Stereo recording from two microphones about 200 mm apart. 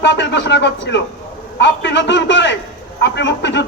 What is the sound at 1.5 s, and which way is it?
A man's voice, 60° left (ahead or behind).